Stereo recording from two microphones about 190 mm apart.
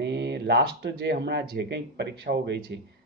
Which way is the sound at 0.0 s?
65° right (ahead or behind).